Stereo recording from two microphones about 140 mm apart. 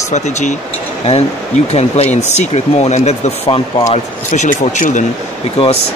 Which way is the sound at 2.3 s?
55° left (ahead or behind).